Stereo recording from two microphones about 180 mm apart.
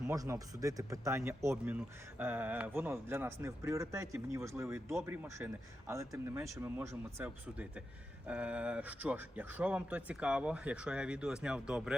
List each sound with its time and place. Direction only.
0.1 s speech: 20° right (ahead or behind)